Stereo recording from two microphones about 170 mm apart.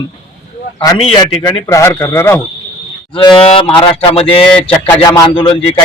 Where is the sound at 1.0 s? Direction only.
35° left (ahead or behind).